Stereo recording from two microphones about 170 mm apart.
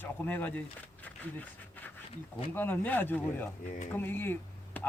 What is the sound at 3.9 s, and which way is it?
Speech, 10° left (ahead or behind).